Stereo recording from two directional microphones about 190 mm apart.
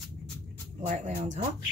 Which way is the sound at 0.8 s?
40° right (ahead or behind).